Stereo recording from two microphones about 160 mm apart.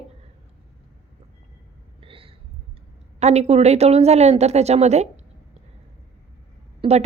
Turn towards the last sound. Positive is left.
turn(degrees=-35)  # may be behind; listen again after turning